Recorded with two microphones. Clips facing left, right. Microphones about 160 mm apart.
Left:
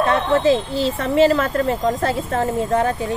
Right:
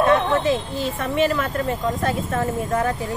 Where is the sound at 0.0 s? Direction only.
35° left (ahead or behind).